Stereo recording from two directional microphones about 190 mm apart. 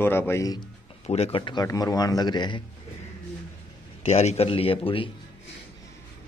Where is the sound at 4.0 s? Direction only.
35° left (ahead or behind).